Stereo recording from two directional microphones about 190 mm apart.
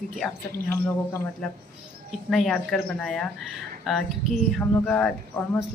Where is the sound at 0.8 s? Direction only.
10° left (ahead or behind).